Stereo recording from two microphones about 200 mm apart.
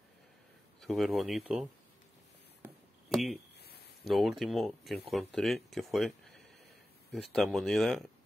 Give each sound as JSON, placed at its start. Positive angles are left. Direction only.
{"t": 0.7, "sound": "speech", "side_deg": 0}
{"t": 3.1, "sound": "speech", "side_deg": 0}
{"t": 3.5, "sound": "a sound", "side_deg": 55}
{"t": 4.0, "sound": "speech", "side_deg": 0}